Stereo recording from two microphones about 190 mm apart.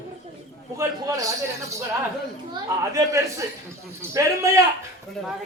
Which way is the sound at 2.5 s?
15° right (ahead or behind).